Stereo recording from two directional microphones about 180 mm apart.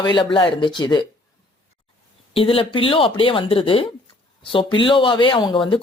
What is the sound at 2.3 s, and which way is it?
Speech, 30° left (ahead or behind).